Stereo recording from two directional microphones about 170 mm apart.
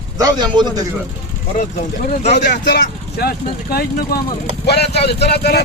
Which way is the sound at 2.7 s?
70° left (ahead or behind).